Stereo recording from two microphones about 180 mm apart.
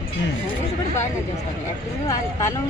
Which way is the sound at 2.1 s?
15° left (ahead or behind).